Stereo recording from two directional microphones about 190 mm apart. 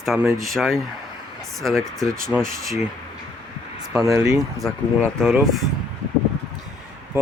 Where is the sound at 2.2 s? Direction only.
15° right (ahead or behind).